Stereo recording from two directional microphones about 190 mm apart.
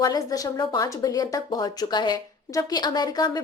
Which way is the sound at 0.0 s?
20° left (ahead or behind).